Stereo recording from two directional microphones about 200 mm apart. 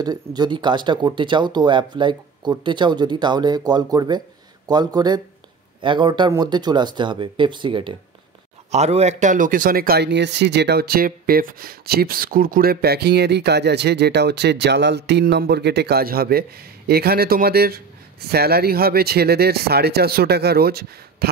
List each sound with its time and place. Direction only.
0.0 s speech: 20° right (ahead or behind); by 21.3 s 50° right (ahead or behind)